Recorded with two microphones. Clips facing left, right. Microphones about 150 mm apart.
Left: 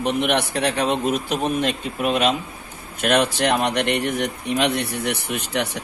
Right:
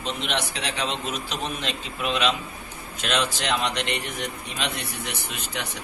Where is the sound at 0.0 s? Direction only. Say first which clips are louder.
Left 8 dB; 60° left (ahead or behind).